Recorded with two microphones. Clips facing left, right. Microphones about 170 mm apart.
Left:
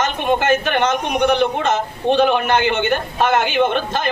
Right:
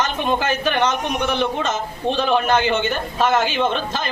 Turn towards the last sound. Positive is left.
turn(degrees=55)  # may be behind; listen again after turning